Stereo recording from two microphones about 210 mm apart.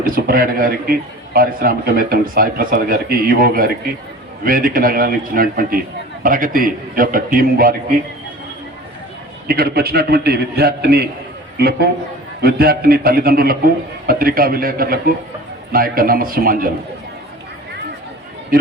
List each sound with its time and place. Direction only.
0.0 s a man's voice: 45° right (ahead or behind)
9.5 s a man's voice: 45° right (ahead or behind)